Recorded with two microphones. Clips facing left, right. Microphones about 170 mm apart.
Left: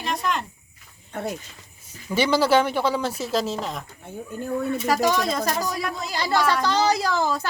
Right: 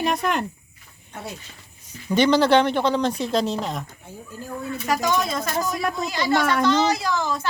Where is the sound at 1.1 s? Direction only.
50° left (ahead or behind).